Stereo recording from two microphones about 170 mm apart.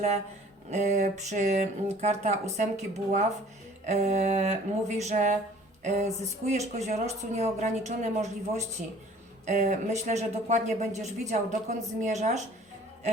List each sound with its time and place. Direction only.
0.7 s speech: 45° right (ahead or behind)